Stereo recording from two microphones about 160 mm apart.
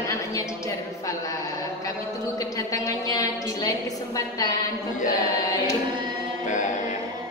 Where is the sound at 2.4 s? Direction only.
20° left (ahead or behind).